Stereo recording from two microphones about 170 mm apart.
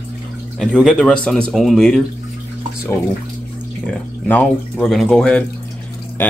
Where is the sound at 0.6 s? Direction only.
Centre (ahead or behind).